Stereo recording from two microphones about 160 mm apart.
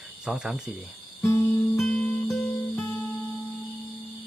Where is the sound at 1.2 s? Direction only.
15° left (ahead or behind).